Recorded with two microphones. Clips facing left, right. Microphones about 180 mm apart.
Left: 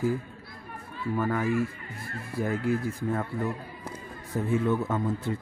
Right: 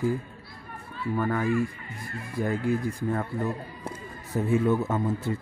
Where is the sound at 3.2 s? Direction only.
20° right (ahead or behind).